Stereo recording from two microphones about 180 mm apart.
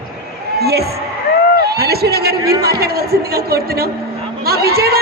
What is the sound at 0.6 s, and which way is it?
Speech, 60° right (ahead or behind).